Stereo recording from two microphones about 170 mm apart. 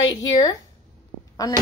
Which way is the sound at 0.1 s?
20° left (ahead or behind).